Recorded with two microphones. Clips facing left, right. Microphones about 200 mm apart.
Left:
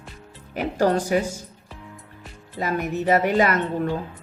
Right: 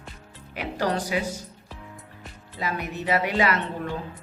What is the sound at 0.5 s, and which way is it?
Speech, 45° left (ahead or behind).